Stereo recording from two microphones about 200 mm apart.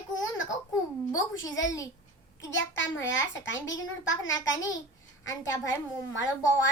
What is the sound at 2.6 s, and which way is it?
Speech, 65° left (ahead or behind).